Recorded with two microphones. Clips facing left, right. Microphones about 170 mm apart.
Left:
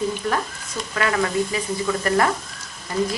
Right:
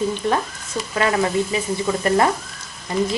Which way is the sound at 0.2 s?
25° right (ahead or behind).